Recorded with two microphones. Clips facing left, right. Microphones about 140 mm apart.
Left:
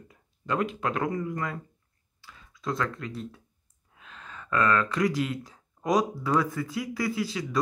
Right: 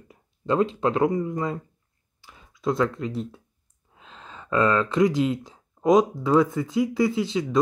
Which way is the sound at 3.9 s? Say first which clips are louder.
Right 2 dB; 25° right (ahead or behind).